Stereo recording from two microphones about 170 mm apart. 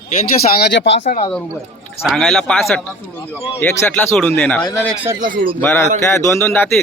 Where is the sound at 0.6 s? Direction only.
90° left.